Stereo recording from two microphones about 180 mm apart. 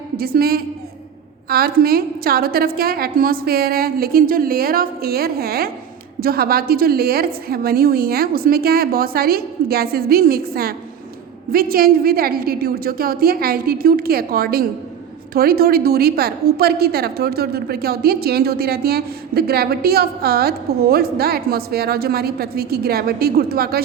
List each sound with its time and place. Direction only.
0.2 s a woman's voice: 55° right (ahead or behind)